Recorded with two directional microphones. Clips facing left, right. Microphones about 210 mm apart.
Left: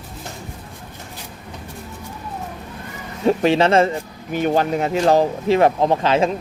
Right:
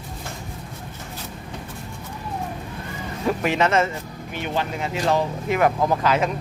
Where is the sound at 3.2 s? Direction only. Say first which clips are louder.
Left 6 dB; 30° left (ahead or behind).